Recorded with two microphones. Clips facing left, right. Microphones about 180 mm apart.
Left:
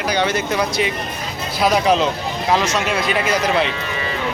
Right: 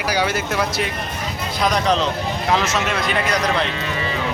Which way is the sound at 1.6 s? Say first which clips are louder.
Left 3 dB; 5° left (ahead or behind).